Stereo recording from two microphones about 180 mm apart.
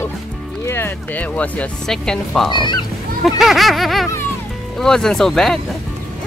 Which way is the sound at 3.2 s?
Centre (ahead or behind).